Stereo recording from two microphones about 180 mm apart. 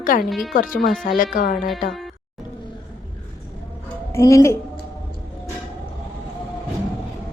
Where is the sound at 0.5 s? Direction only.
50° left (ahead or behind).